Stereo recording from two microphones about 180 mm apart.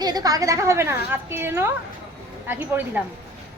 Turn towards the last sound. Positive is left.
turn(degrees=-10)  # may be behind; listen again after turning